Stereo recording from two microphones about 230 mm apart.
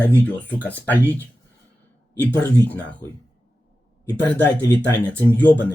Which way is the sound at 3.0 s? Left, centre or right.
Centre.